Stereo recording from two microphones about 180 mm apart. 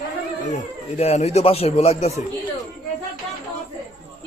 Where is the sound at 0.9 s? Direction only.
35° left (ahead or behind).